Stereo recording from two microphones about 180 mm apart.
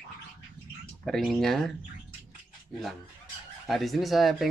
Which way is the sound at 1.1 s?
Centre (ahead or behind).